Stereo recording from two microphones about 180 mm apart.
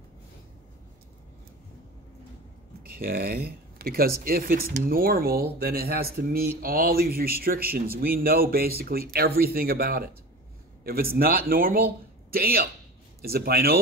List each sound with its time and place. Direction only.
3.0 s speech: 55° right (ahead or behind)